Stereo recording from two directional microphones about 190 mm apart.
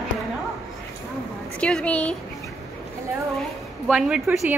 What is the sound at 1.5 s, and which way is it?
Speech, 5° left (ahead or behind).